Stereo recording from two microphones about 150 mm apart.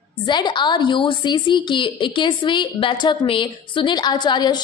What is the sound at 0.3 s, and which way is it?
A woman's voice, 30° left (ahead or behind).